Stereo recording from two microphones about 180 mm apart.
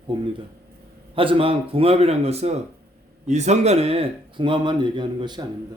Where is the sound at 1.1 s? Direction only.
30° right (ahead or behind).